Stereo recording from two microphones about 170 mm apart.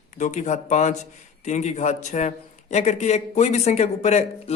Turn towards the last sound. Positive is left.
turn(degrees=40)  # may be behind; listen again after turning